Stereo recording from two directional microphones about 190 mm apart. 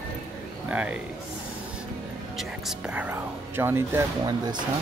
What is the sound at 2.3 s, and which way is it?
Whispering, centre (ahead or behind).